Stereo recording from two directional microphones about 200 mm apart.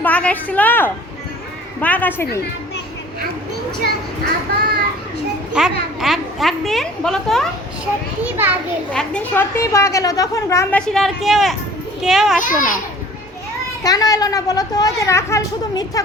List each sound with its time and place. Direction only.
0.0 s a woman's voice: 5° left (ahead or behind)
5.5 s a child's voice: centre (ahead or behind)
8.2 s a child's voice: 10° right (ahead or behind)
8.9 s a woman's voice: 5° left (ahead or behind)
12.4 s a child's voice: 40° left (ahead or behind)
13.8 s a woman's voice: 20° left (ahead or behind)